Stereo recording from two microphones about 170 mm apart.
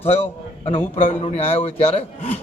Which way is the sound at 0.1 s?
35° left (ahead or behind).